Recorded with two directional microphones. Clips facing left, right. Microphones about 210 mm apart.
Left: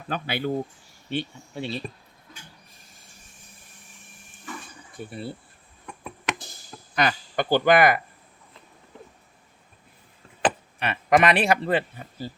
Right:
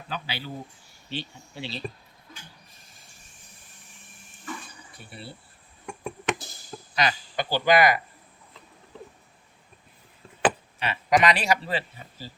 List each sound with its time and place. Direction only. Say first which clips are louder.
0.1 s speech: left 8 dB; 55° left (ahead or behind)
4.9 s speech: left 9 dB; 45° left (ahead or behind)
6.9 s speech: left 3 dB; 50° left (ahead or behind)
10.8 s speech: left 6 dB; 55° left (ahead or behind)